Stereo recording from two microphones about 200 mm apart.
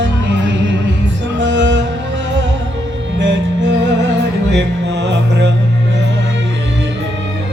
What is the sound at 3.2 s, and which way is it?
Music, 65° right (ahead or behind).